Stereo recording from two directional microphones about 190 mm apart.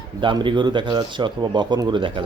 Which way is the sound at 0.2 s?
25° right (ahead or behind).